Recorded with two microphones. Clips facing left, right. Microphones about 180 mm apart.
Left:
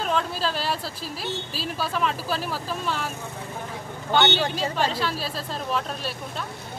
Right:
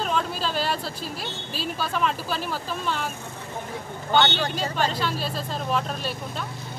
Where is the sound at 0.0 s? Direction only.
Centre (ahead or behind).